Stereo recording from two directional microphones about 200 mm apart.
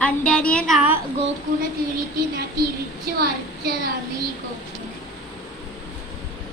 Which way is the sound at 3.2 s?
50° right (ahead or behind).